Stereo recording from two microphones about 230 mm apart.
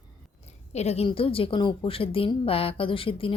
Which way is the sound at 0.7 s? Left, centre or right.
Left.